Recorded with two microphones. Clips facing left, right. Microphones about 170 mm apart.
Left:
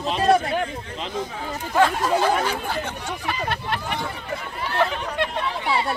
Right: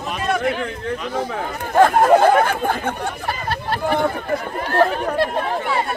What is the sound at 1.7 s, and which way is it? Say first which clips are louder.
Speech: right 7 dB; 55° right (ahead or behind).